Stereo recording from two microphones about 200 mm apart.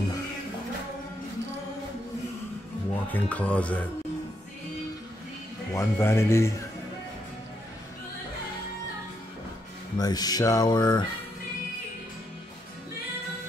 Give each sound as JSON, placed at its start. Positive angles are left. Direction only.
{"t": 3.1, "sound": "speech", "side_deg": 5}
{"t": 5.8, "sound": "speech", "side_deg": 10}
{"t": 9.9, "sound": "speech", "side_deg": 20}